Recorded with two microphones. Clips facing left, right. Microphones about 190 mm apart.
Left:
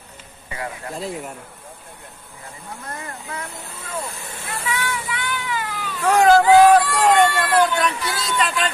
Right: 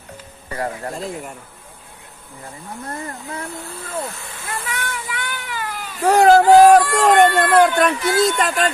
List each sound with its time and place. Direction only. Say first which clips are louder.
0.5 s speech: right 5 dB; 40° right (ahead or behind)
0.9 s speech: even; centre (ahead or behind)
2.9 s speech: right 3 dB; 35° right (ahead or behind)
4.5 s speech: left 2 dB; 50° right (ahead or behind)